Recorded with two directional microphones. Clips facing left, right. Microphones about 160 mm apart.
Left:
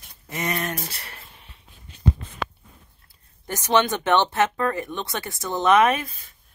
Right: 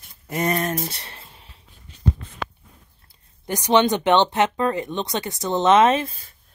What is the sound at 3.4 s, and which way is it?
Speech, 15° right (ahead or behind).